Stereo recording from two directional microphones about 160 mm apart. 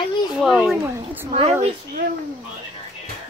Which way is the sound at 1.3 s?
40° right (ahead or behind).